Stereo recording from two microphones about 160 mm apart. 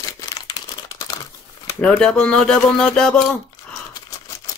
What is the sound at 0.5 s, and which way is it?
Crumpling, 25° left (ahead or behind).